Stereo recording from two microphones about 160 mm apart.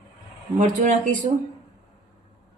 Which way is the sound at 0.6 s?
50° right (ahead or behind).